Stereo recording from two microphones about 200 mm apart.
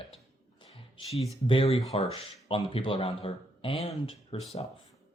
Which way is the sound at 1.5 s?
30° left (ahead or behind).